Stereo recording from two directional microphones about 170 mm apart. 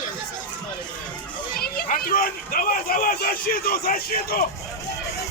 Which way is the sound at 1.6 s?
60° left (ahead or behind).